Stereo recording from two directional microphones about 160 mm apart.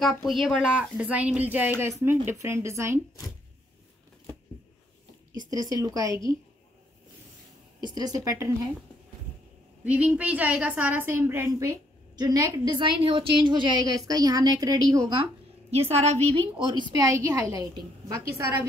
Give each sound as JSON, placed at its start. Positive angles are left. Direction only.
{"t": 0.0, "sound": "speech", "side_deg": 0}
{"t": 5.5, "sound": "a woman's voice", "side_deg": -20}
{"t": 7.8, "sound": "a woman's voice", "side_deg": -25}
{"t": 9.8, "sound": "a woman's voice", "side_deg": -10}
{"t": 15.7, "sound": "a woman's voice", "side_deg": -40}
{"t": 16.3, "sound": "a woman's voice", "side_deg": -30}